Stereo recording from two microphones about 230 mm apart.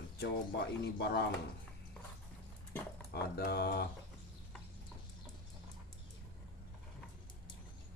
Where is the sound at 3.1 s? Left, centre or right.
Left.